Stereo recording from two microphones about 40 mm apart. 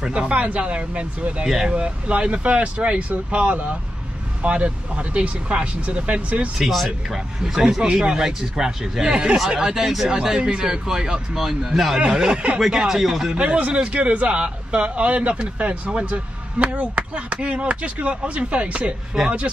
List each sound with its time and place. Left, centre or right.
0.1 s speech: right
6.6 s speech: centre
7.4 s speech: centre
11.3 s speech: centre
12.0 s speech: right; by 13.3 s centre
13.3 s speech: right